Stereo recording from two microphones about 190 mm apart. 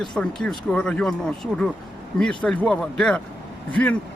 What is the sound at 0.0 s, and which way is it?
Speech, 5° left (ahead or behind).